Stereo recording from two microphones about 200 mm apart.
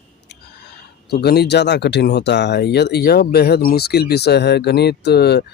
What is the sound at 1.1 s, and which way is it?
Speech, 55° left (ahead or behind).